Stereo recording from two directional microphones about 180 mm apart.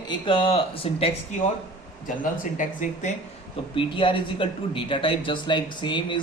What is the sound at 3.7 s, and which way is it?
Speech, 30° left (ahead or behind).